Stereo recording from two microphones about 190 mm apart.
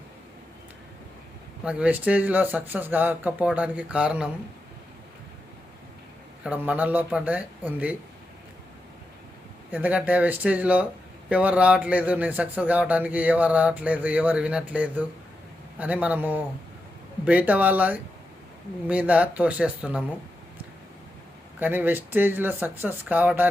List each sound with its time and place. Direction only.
1.6 s a man's voice: 5° right (ahead or behind)
6.4 s a man's voice: 10° right (ahead or behind)
9.7 s a man's voice: 10° right (ahead or behind)
21.6 s a man's voice: 10° right (ahead or behind)